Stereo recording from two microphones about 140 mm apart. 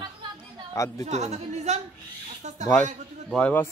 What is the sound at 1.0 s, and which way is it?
Speech, 50° right (ahead or behind).